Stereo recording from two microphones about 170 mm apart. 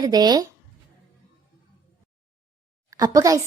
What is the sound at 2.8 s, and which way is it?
Speech, 20° right (ahead or behind).